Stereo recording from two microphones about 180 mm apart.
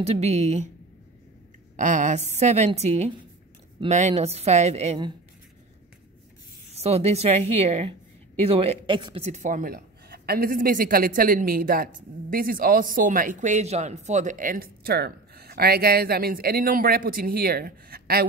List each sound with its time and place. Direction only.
0.0 s a woman's voice: 35° right (ahead or behind)
1.8 s a woman's voice: 45° right (ahead or behind)
6.7 s a woman's voice: 35° right (ahead or behind)
9.2 s a woman's voice: 40° right (ahead or behind); by 18.2 s 60° right (ahead or behind)